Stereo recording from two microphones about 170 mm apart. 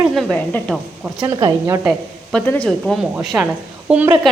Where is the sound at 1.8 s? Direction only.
Centre (ahead or behind).